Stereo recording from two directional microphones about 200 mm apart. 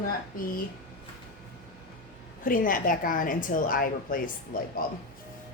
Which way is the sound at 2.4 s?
45° left (ahead or behind).